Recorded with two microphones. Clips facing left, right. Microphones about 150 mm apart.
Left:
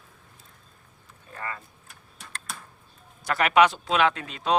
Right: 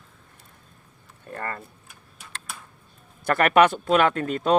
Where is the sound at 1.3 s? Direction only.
55° right (ahead or behind).